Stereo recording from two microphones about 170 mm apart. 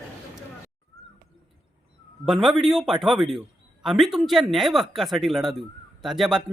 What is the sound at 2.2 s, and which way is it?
A man's voice, centre (ahead or behind).